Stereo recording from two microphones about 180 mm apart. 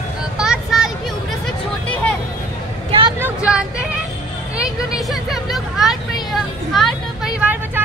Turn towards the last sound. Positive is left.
turn(degrees=-5)  # may be behind; listen again after turning